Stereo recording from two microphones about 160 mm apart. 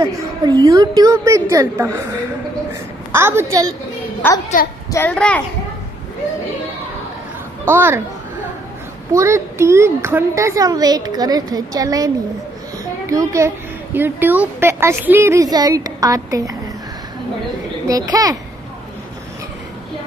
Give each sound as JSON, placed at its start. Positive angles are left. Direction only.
{"t": 0.7, "sound": "a woman's voice", "side_deg": -20}
{"t": 3.1, "sound": "a woman's voice", "side_deg": -15}
{"t": 4.5, "sound": "a child's voice", "side_deg": 55}
{"t": 4.9, "sound": "a child's voice", "side_deg": 10}
{"t": 7.6, "sound": "a woman's voice", "side_deg": -15}
{"t": 9.1, "sound": "a woman's voice", "side_deg": -20}
{"t": 13.1, "sound": "a woman's voice", "side_deg": -20}
{"t": 17.8, "sound": "a woman's voice", "side_deg": -25}